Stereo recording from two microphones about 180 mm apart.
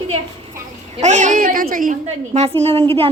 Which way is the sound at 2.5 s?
10° left (ahead or behind).